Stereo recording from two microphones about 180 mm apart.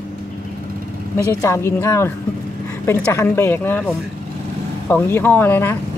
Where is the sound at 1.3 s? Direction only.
15° left (ahead or behind).